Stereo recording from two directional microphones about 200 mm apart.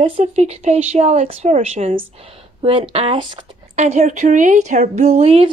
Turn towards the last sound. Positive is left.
turn(degrees=-30)  # may be behind; listen again after turning